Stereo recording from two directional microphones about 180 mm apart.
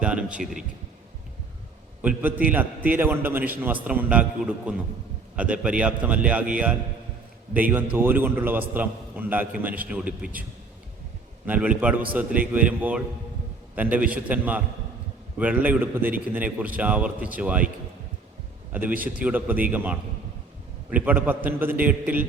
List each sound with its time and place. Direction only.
0.0 s a man's voice: 5° right (ahead or behind)
2.0 s a man's voice: 10° right (ahead or behind)
7.5 s a man's voice: 10° right (ahead or behind)
11.4 s a man's voice: 10° right (ahead or behind)
18.7 s a man's voice: 10° right (ahead or behind)